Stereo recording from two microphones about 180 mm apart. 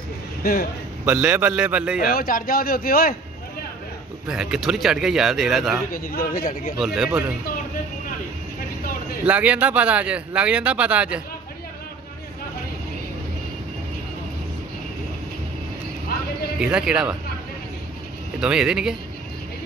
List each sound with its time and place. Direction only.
0.4 s speech: 50° left (ahead or behind)
1.0 s speech: 10° right (ahead or behind)
2.1 s a man's voice: 55° left (ahead or behind)
4.3 s speech: 5° right (ahead or behind)
5.9 s a man's voice: 50° left (ahead or behind)
6.8 s speech: 5° right (ahead or behind)
9.2 s speech: 5° right (ahead or behind)
16.5 s speech: 5° right (ahead or behind)
18.4 s speech: 5° right (ahead or behind)